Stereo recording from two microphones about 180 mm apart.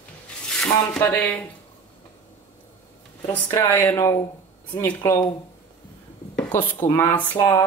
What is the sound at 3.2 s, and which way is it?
Speech, 15° left (ahead or behind).